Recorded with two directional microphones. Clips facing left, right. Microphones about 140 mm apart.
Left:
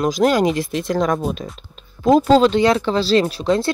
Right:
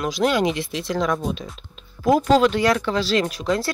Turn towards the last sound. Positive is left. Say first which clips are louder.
# left 4 dB
turn(degrees=25)  # may be behind; listen again after turning